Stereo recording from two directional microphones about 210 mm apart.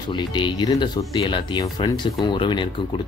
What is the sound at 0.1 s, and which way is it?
Speech, 20° left (ahead or behind).